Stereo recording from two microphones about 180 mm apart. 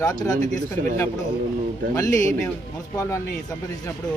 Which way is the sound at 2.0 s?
15° left (ahead or behind).